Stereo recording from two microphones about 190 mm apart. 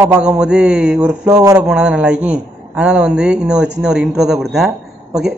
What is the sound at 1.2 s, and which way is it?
Speech, 20° right (ahead or behind).